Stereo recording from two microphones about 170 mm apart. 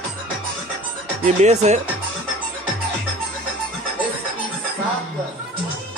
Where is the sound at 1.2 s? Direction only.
45° right (ahead or behind).